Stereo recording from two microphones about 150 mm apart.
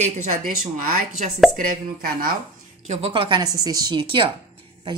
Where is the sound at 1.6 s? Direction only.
70° right (ahead or behind).